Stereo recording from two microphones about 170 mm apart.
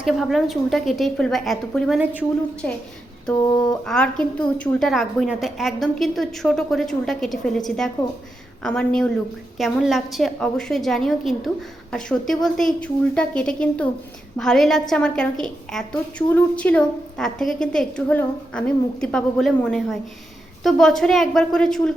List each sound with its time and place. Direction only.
0.0 s a woman's voice: centre (ahead or behind)
3.2 s a woman's voice: 5° left (ahead or behind)